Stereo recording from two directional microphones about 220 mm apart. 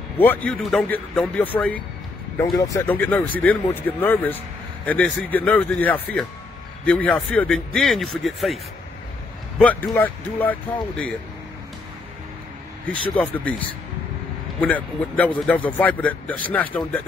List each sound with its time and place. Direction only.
0.2 s speech: 10° left (ahead or behind)
2.5 s speech: 10° left (ahead or behind)
9.6 s speech: 10° left (ahead or behind)
13.1 s speech: 5° left (ahead or behind)